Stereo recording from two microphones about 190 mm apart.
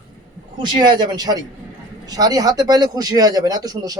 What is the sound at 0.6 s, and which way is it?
Speech, 20° right (ahead or behind).